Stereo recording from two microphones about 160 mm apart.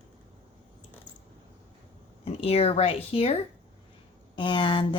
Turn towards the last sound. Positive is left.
turn(degrees=30)  # may be behind; listen again after turning